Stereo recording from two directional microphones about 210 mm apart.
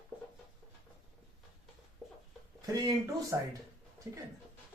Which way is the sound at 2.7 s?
15° right (ahead or behind).